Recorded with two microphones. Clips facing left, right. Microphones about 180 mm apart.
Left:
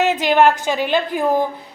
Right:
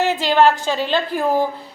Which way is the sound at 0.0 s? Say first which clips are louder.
Left 1 dB; 15° left (ahead or behind).